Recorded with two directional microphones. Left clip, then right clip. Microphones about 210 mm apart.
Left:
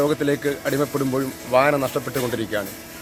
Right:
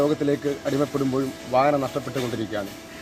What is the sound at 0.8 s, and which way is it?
Speech, 15° left (ahead or behind).